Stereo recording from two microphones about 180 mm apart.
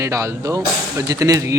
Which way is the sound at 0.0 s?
15° right (ahead or behind).